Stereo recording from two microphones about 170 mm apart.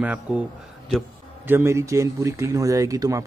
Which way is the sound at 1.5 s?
15° right (ahead or behind).